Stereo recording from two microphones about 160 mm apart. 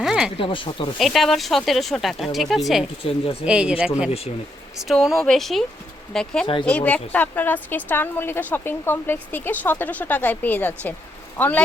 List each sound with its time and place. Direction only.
0.0 s a sound: 5° right (ahead or behind)
0.3 s speech: 30° left (ahead or behind)
0.9 s a woman's voice: centre (ahead or behind)